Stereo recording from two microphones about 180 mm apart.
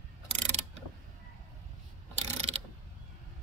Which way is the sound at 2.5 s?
35° right (ahead or behind).